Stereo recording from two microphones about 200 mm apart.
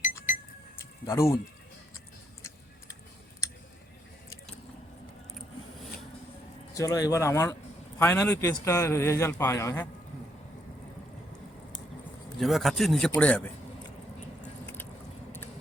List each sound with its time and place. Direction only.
0.3 s a sound: 40° left (ahead or behind)
1.0 s a man's voice: 15° left (ahead or behind)
6.7 s a man's voice: 15° left (ahead or behind)
12.4 s a man's voice: centre (ahead or behind)